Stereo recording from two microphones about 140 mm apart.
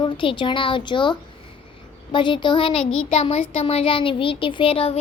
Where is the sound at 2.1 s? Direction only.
35° left (ahead or behind).